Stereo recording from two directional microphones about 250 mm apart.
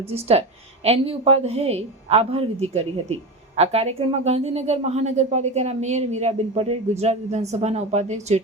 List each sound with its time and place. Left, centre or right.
0.1 s a woman's voice: right